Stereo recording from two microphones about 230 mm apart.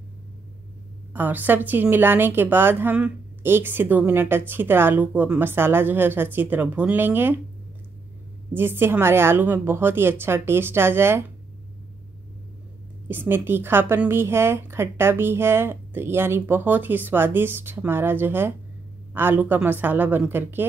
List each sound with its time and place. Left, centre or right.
1.1 s a woman's voice: centre
8.5 s a woman's voice: centre
13.1 s a woman's voice: centre